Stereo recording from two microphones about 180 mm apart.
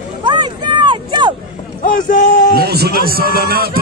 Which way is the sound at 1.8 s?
50° left (ahead or behind).